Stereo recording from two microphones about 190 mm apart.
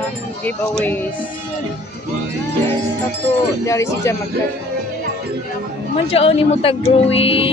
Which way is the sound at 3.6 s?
15° left (ahead or behind).